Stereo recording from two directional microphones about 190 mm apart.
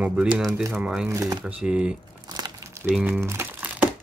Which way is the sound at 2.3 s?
20° right (ahead or behind).